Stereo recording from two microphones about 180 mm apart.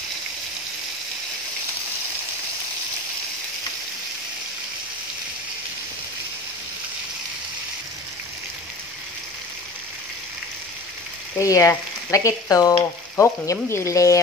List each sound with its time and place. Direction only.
11.3 s frying: 15° left (ahead or behind)